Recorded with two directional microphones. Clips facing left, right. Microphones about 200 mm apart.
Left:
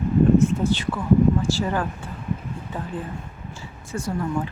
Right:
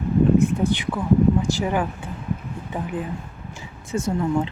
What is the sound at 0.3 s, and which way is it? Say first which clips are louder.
A woman's voice: even; 15° right (ahead or behind).